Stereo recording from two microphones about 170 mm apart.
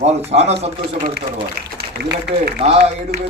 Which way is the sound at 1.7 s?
70° right (ahead or behind).